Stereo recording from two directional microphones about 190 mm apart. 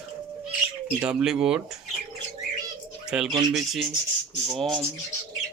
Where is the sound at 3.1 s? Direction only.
5° right (ahead or behind).